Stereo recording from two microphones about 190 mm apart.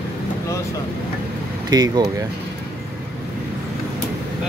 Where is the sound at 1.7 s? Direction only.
20° right (ahead or behind).